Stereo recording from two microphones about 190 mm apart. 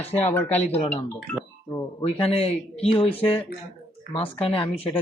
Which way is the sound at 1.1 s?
10° left (ahead or behind).